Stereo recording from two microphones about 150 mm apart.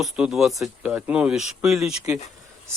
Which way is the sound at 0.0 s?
Centre (ahead or behind).